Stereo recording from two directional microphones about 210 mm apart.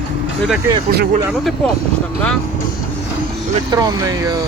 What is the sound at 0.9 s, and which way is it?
Speech, 45° right (ahead or behind).